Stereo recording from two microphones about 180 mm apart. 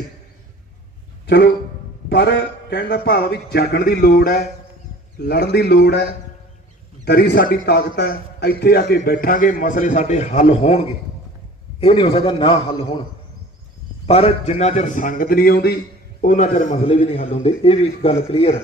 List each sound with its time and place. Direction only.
1.2 s a sound: 70° left (ahead or behind)
2.0 s a man's voice: 75° left (ahead or behind)
7.1 s a man's voice: 65° left (ahead or behind); by 13.0 s 30° left (ahead or behind)
14.0 s a man's voice: 30° left (ahead or behind)